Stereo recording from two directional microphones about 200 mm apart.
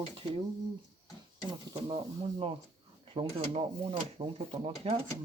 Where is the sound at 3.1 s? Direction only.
25° right (ahead or behind).